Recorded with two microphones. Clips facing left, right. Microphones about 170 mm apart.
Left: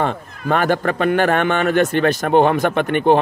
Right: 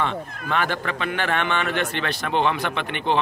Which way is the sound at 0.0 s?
45° left (ahead or behind).